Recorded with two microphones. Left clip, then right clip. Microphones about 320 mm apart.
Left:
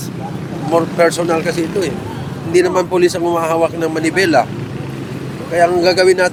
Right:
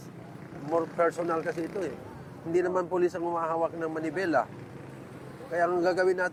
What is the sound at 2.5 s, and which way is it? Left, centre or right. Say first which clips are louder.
Speech: left 14 dB; right.